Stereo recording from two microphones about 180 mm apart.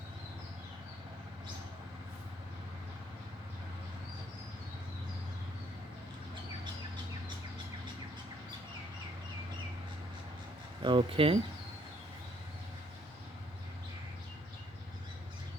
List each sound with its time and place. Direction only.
10.8 s speech: 30° right (ahead or behind)